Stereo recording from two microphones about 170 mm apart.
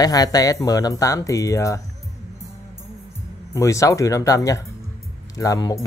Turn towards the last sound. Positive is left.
turn(degrees=20)  # may be behind; listen again after turning